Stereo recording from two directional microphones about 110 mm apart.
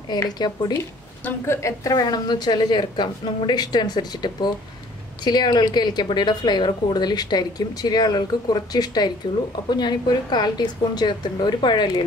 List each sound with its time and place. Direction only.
0.1 s a woman's voice: 40° left (ahead or behind)
1.2 s a woman's voice: 25° left (ahead or behind); by 12.0 s 40° left (ahead or behind)